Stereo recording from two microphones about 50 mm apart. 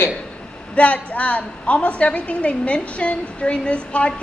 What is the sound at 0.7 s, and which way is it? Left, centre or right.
A woman's voice, left.